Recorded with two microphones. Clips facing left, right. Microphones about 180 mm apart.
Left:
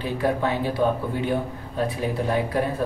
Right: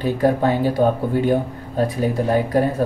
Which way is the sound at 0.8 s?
50° right (ahead or behind).